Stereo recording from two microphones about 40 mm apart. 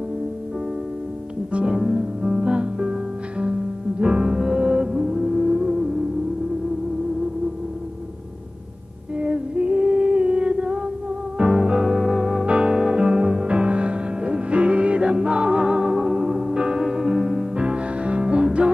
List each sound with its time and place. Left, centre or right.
1.5 s music: right
9.2 s music: right
11.8 s music: centre